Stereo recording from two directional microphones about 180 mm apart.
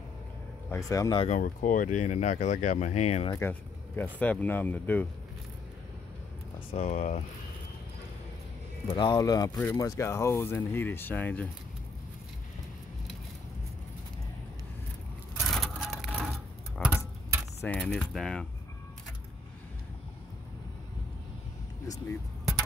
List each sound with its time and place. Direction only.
0.7 s speech: 20° left (ahead or behind)
1.3 s speech: 45° left (ahead or behind)
3.3 s speech: 10° left (ahead or behind)
6.7 s speech: 35° left (ahead or behind)
8.9 s speech: 25° left (ahead or behind); by 11.4 s 10° left (ahead or behind)
15.4 s a sound: centre (ahead or behind)
17.6 s speech: 5° left (ahead or behind)